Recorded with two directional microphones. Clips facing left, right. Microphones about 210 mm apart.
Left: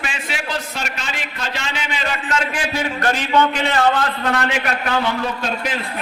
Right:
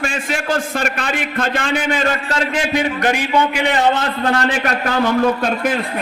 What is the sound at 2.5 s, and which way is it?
A man's voice, 15° right (ahead or behind).